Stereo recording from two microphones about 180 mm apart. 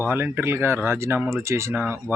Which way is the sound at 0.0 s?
10° right (ahead or behind).